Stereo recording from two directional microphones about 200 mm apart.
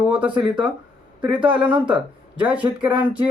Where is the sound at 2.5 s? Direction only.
5° right (ahead or behind).